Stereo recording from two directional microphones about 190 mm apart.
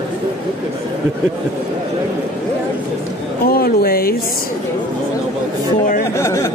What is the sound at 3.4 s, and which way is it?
Speech, 55° left (ahead or behind).